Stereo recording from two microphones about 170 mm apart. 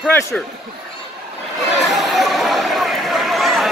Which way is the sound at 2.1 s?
Centre (ahead or behind).